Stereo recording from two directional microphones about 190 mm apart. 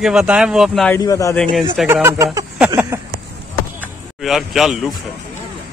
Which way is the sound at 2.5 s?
10° right (ahead or behind).